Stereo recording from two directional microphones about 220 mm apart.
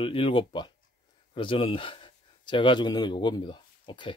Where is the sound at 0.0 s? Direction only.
25° left (ahead or behind).